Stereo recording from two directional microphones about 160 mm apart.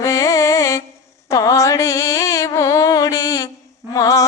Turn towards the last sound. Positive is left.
turn(degrees=20)  # may be behind; listen again after turning